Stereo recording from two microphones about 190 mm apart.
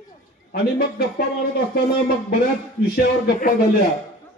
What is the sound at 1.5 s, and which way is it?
Speech, 50° left (ahead or behind).